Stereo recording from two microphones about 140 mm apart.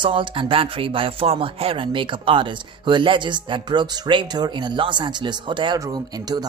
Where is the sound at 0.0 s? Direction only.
35° right (ahead or behind).